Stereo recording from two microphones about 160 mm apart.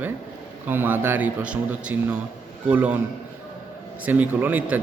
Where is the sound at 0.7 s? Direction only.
15° right (ahead or behind).